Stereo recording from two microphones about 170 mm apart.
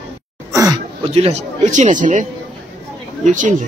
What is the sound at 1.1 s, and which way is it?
Speech, 40° right (ahead or behind).